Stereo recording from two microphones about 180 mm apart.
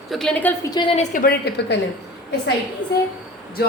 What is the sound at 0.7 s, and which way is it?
Speech, 25° left (ahead or behind).